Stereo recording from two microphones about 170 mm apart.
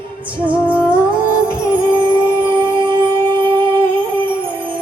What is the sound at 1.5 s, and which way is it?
Music, 30° right (ahead or behind).